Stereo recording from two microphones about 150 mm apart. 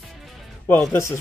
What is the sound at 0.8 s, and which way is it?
Speech, 20° left (ahead or behind).